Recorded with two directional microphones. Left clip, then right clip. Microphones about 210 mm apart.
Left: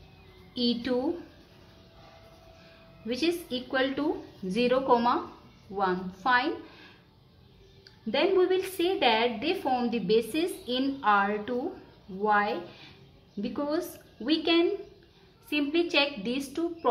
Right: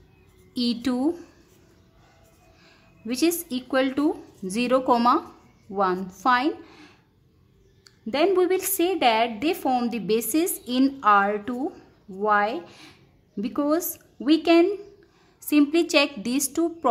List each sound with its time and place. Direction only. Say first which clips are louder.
0.6 s a woman's voice: right 2 dB; 55° right (ahead or behind)
3.1 s a woman's voice: right 4 dB; 55° right (ahead or behind)
8.1 s a woman's voice: right 4 dB; 55° right (ahead or behind)